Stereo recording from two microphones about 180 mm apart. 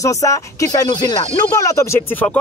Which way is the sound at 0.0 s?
15° left (ahead or behind).